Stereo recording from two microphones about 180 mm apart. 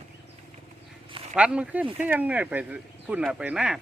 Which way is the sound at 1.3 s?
5° right (ahead or behind).